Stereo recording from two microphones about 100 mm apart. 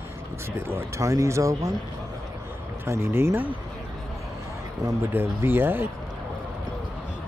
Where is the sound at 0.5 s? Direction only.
25° right (ahead or behind).